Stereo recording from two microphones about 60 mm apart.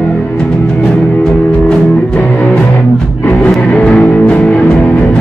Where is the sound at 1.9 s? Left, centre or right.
Left.